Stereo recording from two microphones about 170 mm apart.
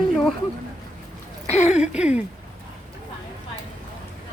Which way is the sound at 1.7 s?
5° right (ahead or behind).